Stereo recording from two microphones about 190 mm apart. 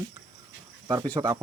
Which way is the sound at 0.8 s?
20° right (ahead or behind).